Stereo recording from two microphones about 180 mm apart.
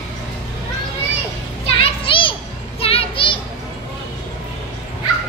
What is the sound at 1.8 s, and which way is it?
Children playing, 30° left (ahead or behind).